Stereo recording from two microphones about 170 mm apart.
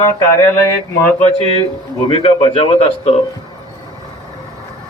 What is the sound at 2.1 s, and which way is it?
Speech, 35° left (ahead or behind).